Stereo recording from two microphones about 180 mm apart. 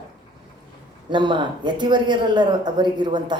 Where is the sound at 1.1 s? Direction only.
25° right (ahead or behind).